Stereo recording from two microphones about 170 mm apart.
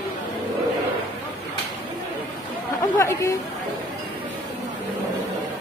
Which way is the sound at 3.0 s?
20° left (ahead or behind).